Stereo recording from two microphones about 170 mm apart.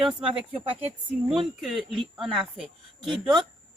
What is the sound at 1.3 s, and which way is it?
A woman's voice, centre (ahead or behind).